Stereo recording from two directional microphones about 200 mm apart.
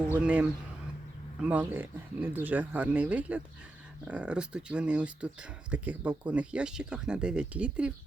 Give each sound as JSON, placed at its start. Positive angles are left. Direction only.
{"t": 0.1, "sound": "speech", "side_deg": -5}